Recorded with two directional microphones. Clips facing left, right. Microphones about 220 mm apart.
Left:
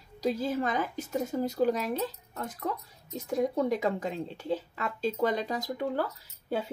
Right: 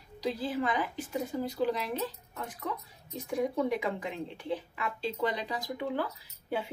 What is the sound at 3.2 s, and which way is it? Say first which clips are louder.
Speech: left 2 dB; 40° left (ahead or behind).